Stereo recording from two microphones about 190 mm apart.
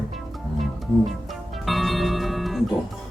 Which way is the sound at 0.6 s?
Centre (ahead or behind).